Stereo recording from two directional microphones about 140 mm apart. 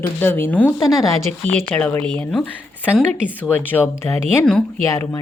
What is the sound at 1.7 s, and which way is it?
A woman's voice, 10° left (ahead or behind).